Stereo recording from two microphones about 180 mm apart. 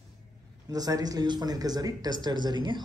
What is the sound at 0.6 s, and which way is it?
A man's voice, 20° right (ahead or behind).